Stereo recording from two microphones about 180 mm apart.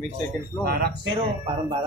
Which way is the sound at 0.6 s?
55° right (ahead or behind).